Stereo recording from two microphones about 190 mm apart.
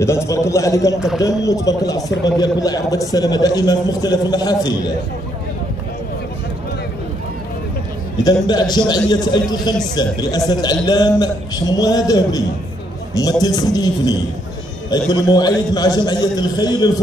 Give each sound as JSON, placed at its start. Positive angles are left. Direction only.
{"t": 0.0, "sound": "a man's voice", "side_deg": 15}
{"t": 8.2, "sound": "a man's voice", "side_deg": 20}